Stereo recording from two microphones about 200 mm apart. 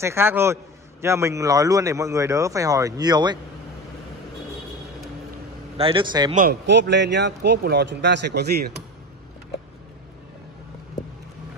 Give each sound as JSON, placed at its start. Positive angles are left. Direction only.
{"t": 0.0, "sound": "speech", "side_deg": -10}
{"t": 5.8, "sound": "a man's voice", "side_deg": -25}
{"t": 6.6, "sound": "speech", "side_deg": -60}